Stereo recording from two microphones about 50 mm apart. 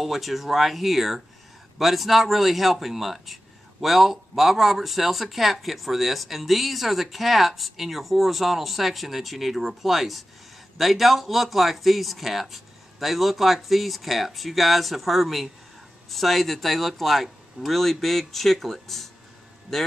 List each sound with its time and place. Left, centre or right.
0.0 s speech: centre